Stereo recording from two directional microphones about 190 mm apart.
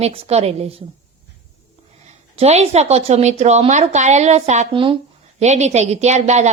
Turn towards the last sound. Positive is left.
turn(degrees=-35)  # may be behind; listen again after turning